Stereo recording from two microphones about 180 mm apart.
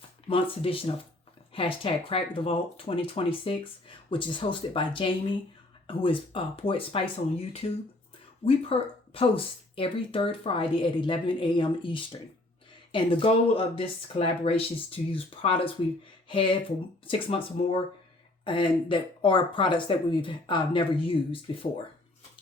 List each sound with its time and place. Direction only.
0.3 s speech: 30° left (ahead or behind)
8.4 s speech: 30° left (ahead or behind)